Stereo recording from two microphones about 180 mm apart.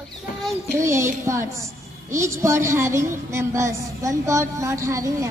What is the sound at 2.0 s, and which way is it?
A woman's voice, 15° right (ahead or behind).